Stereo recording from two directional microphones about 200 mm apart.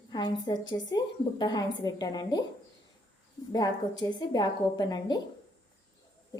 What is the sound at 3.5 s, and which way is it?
A woman's voice, 20° left (ahead or behind).